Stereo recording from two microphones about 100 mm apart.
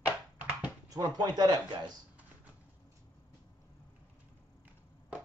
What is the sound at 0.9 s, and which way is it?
Speech, 40° right (ahead or behind).